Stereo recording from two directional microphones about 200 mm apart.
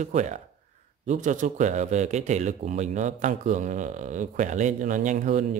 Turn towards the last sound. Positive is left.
turn(degrees=-40)  # may be behind; listen again after turning